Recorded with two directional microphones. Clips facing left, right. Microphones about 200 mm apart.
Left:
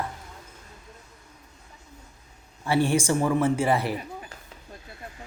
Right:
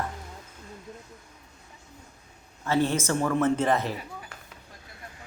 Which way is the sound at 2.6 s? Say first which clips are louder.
Left 2 dB; 10° left (ahead or behind).